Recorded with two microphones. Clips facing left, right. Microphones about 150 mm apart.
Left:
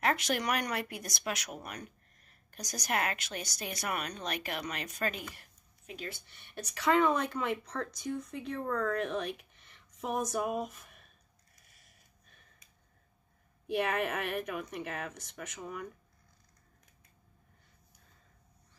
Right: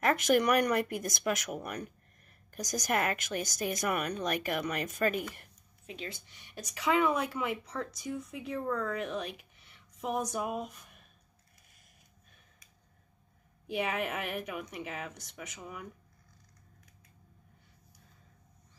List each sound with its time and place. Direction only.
0.0 s speech: 45° right (ahead or behind)
6.1 s speech: 15° right (ahead or behind)
13.7 s speech: centre (ahead or behind)